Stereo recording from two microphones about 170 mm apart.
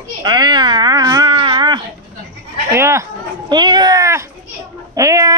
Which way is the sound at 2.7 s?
15° right (ahead or behind).